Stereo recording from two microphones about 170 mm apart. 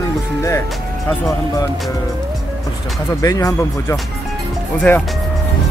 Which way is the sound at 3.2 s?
20° left (ahead or behind).